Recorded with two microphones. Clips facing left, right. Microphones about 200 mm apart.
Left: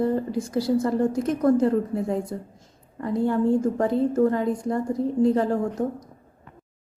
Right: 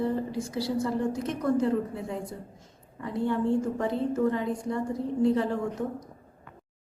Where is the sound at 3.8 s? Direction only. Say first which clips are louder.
Left 6 dB; 45° left (ahead or behind).